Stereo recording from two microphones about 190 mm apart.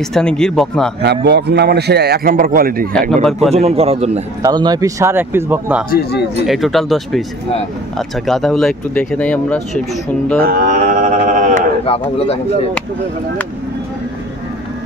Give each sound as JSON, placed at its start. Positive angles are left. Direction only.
{"t": 0.1, "sound": "speech", "side_deg": 5}
{"t": 1.0, "sound": "a man's voice", "side_deg": -60}
{"t": 2.9, "sound": "speech", "side_deg": 5}
{"t": 3.5, "sound": "a man's voice", "side_deg": -30}
{"t": 4.4, "sound": "speech", "side_deg": -20}
{"t": 5.9, "sound": "speech", "side_deg": 55}
{"t": 6.4, "sound": "speech", "side_deg": 0}
{"t": 8.3, "sound": "speech", "side_deg": 0}
{"t": 10.4, "sound": "mantra", "side_deg": -50}
{"t": 11.8, "sound": "speech", "side_deg": 30}